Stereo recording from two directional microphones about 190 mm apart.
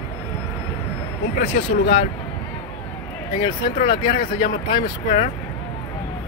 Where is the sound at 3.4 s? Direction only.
25° left (ahead or behind).